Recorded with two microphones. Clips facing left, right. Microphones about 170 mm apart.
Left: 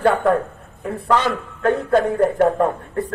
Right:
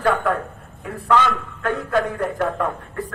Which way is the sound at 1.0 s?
35° left (ahead or behind).